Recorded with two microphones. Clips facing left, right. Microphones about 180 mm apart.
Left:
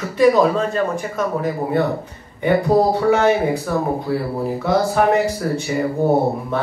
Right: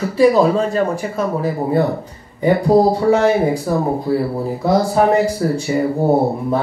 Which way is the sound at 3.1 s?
35° right (ahead or behind).